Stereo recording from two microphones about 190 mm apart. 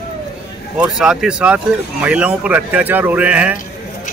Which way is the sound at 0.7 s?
5° right (ahead or behind).